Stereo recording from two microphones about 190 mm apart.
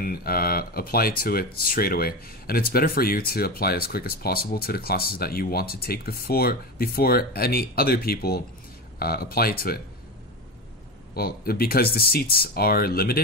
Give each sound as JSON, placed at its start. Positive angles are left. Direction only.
{"t": 0.0, "sound": "speech", "side_deg": 50}
{"t": 11.1, "sound": "speech", "side_deg": 55}